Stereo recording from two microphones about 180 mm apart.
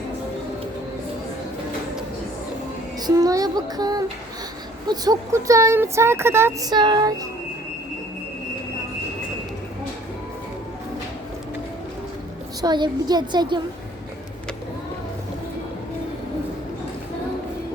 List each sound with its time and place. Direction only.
3.0 s child singing: 20° right (ahead or behind)
4.9 s speech: 20° right (ahead or behind)
12.6 s child singing: 25° right (ahead or behind)